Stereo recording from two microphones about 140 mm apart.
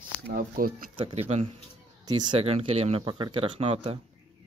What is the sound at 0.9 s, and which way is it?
Speech, 40° right (ahead or behind).